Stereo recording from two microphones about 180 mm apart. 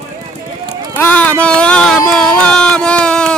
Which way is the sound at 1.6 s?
5° left (ahead or behind).